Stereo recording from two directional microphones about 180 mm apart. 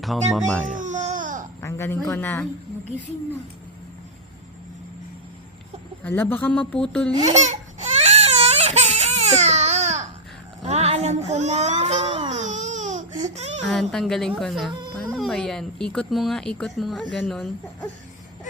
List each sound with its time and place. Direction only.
0.0 s speech: centre (ahead or behind)
0.8 s baby cry: 40° right (ahead or behind)
1.6 s a man's voice: 15° left (ahead or behind)
6.0 s speech: 10° left (ahead or behind)
7.3 s baby cry: 40° right (ahead or behind)
10.6 s speech: 35° right (ahead or behind)
12.3 s baby cry: 40° right (ahead or behind)
13.2 s a sound: 40° right (ahead or behind)
13.9 s speech: centre (ahead or behind)